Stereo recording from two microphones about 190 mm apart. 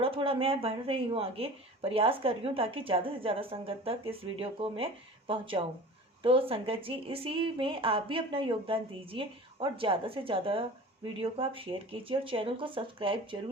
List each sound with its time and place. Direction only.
0.0 s a woman's voice: 30° right (ahead or behind)